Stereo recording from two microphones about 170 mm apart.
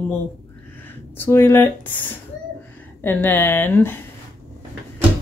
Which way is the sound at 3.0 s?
10° left (ahead or behind).